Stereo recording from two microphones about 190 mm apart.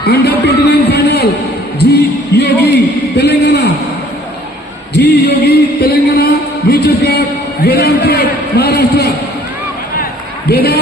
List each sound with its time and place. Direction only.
0.0 s speech: 60° left (ahead or behind)
0.5 s a sound: 60° left (ahead or behind)
4.9 s music: 60° left (ahead or behind)
10.5 s speech: 55° left (ahead or behind)